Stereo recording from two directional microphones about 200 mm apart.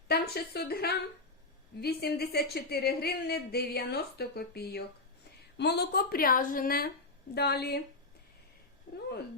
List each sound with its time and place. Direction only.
0.1 s a woman's voice: 55° left (ahead or behind)
8.9 s speech: 50° left (ahead or behind)